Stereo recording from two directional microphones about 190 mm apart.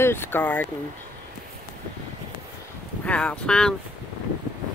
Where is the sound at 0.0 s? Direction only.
10° left (ahead or behind).